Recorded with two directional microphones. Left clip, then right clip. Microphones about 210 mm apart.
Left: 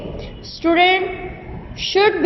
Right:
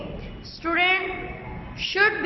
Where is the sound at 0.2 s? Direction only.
20° left (ahead or behind).